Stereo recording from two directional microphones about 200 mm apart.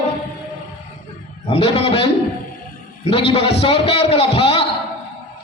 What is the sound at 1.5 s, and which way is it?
Speech, 30° left (ahead or behind).